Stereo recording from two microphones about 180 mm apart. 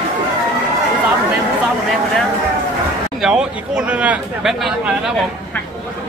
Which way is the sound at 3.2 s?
5° right (ahead or behind).